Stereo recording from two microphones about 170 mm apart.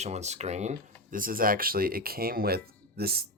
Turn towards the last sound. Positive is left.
turn(degrees=-65)  # may be behind; listen again after turning